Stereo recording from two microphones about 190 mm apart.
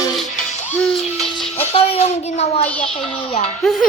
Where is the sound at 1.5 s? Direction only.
35° left (ahead or behind).